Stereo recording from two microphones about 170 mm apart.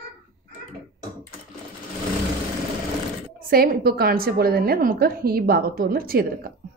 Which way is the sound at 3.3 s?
55° right (ahead or behind).